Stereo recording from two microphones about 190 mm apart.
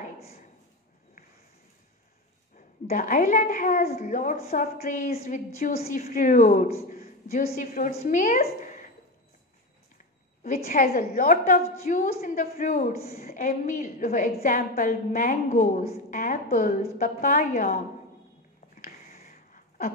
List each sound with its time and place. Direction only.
2.5 s a woman's voice: 45° left (ahead or behind)
10.4 s a woman's voice: 45° left (ahead or behind)
18.9 s a sound: 45° left (ahead or behind)